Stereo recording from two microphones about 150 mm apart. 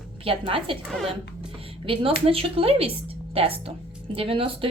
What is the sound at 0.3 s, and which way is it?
Speech, 35° right (ahead or behind).